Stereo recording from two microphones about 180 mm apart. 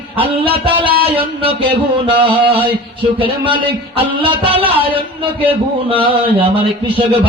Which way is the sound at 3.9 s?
30° right (ahead or behind).